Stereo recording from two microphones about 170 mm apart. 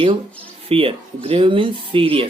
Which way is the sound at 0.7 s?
35° right (ahead or behind).